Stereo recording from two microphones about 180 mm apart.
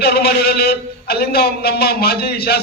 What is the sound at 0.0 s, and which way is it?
A man's voice, 60° left (ahead or behind).